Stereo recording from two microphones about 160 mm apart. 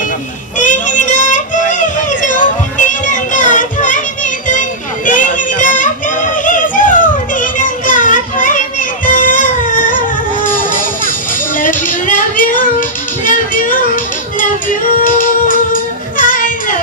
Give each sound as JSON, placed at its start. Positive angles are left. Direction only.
{"t": 0.6, "sound": "child singing", "side_deg": 50}
{"t": 4.5, "sound": "music", "side_deg": 55}
{"t": 13.2, "sound": "child singing", "side_deg": 55}
{"t": 15.0, "sound": "music", "side_deg": 55}